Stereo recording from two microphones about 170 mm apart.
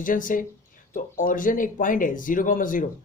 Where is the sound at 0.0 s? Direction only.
50° left (ahead or behind).